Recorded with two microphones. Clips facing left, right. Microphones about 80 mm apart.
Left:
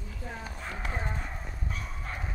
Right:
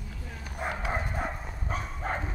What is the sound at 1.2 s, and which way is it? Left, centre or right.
Bow-wow, right.